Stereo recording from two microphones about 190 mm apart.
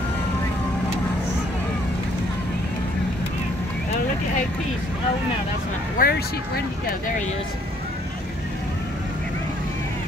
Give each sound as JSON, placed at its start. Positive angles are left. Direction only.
{"t": 5.9, "sound": "speech", "side_deg": 55}